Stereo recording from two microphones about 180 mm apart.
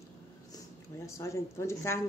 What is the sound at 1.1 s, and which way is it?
Speech, 15° left (ahead or behind).